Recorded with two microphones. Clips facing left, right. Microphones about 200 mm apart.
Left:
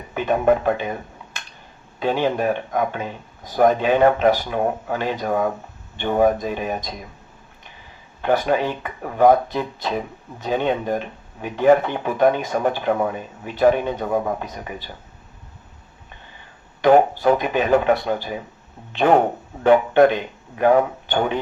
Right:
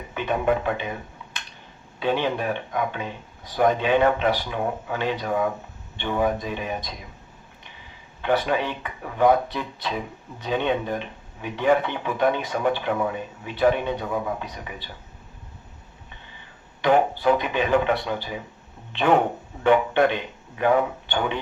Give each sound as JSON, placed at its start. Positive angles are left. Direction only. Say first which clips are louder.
{"t": 0.1, "sound": "a man's voice", "louder": "left 5 dB", "side_deg": 40}
{"t": 2.0, "sound": "speech", "louder": "left 3 dB", "side_deg": 45}
{"t": 8.2, "sound": "speech", "louder": "left 4 dB", "side_deg": 45}
{"t": 16.8, "sound": "speech", "louder": "left 5 dB", "side_deg": 45}